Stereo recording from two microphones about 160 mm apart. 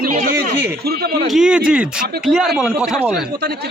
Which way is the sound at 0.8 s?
80° right.